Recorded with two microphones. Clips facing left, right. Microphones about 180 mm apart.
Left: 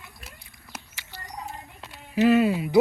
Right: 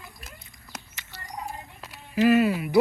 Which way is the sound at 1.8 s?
Centre (ahead or behind).